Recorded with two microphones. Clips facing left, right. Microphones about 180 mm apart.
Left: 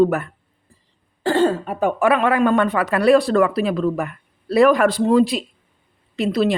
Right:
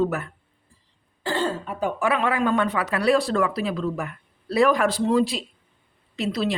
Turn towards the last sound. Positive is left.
turn(degrees=55)  # may be behind; listen again after turning